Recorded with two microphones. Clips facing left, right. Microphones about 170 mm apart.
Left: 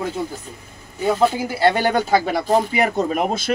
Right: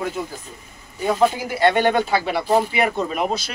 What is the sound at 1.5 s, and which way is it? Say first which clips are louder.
Speech: even; 35° left (ahead or behind).